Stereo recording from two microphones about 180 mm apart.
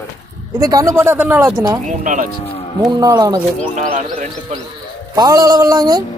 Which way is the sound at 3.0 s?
20° right (ahead or behind).